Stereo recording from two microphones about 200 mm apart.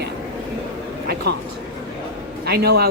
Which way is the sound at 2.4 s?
50° right (ahead or behind).